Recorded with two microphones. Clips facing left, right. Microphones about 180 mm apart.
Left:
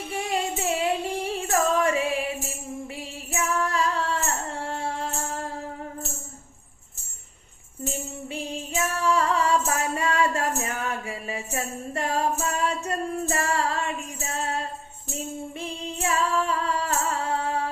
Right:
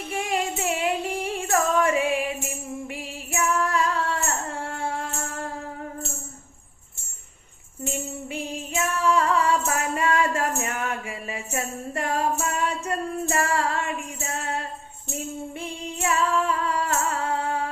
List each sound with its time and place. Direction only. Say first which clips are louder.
0.2 s child singing: right 1 dB; 35° left (ahead or behind)
1.4 s music: right 1 dB; 35° left (ahead or behind)
7.9 s female singing: right 2 dB; 35° left (ahead or behind)